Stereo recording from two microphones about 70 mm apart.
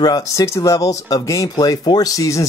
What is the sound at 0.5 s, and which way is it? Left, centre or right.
Speech, left.